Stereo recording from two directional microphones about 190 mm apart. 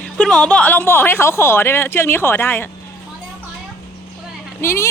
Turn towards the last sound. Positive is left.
turn(degrees=15)  # may be behind; listen again after turning